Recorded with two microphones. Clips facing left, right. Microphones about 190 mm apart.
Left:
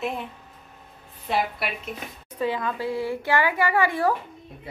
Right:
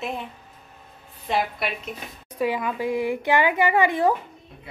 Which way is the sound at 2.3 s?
10° right (ahead or behind).